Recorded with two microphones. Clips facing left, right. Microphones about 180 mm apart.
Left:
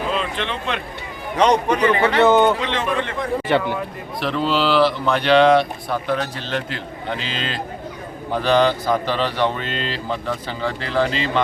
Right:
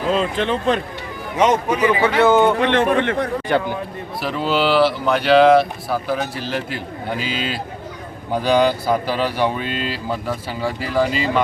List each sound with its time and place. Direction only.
0.1 s speech: 40° right (ahead or behind)
1.4 s speech: 5° right (ahead or behind)
2.6 s speech: 60° right (ahead or behind)
3.5 s speech: centre (ahead or behind)